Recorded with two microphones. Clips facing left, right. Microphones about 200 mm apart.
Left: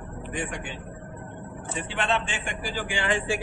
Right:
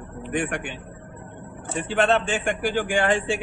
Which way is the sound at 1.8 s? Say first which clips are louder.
Right 8 dB; 45° right (ahead or behind).